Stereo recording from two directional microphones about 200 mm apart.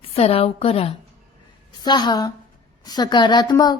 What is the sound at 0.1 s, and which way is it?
A woman's voice, 30° left (ahead or behind).